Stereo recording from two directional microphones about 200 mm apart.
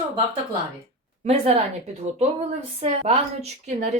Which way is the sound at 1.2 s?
30° right (ahead or behind).